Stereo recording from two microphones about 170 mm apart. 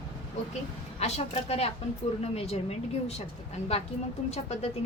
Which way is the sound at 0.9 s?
40° left (ahead or behind).